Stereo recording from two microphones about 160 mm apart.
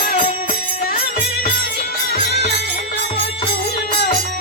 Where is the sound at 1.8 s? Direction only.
85° left.